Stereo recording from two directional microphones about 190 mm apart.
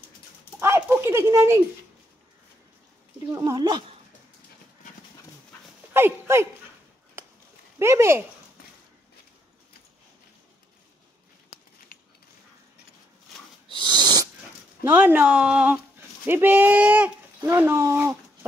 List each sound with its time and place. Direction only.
0.6 s a sound: 10° right (ahead or behind)
3.3 s speech: 20° right (ahead or behind)
5.9 s speech: 15° right (ahead or behind)
7.8 s speech: 15° right (ahead or behind)
13.7 s owl: 25° right (ahead or behind)
14.8 s speech: 10° right (ahead or behind)